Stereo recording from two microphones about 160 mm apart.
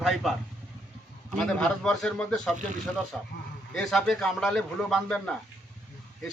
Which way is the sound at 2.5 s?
50° right (ahead or behind).